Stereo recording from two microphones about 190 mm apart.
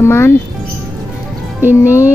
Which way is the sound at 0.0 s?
15° left (ahead or behind).